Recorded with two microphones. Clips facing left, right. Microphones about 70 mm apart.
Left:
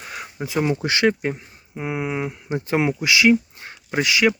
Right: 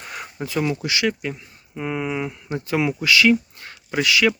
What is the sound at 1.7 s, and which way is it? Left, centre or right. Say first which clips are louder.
Speech: even; centre.